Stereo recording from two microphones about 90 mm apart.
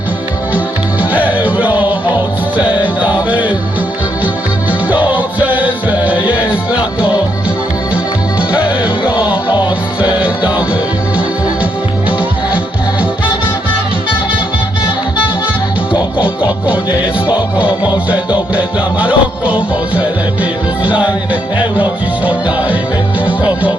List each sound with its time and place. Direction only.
1.1 s music: 15° right (ahead or behind)
4.9 s music: 20° right (ahead or behind)
8.8 s music: 15° right (ahead or behind)
15.9 s music: 15° right (ahead or behind)